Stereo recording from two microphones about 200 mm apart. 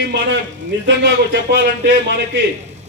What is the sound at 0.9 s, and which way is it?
A man's voice, 60° right (ahead or behind).